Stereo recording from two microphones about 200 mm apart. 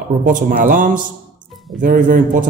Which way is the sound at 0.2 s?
45° right (ahead or behind).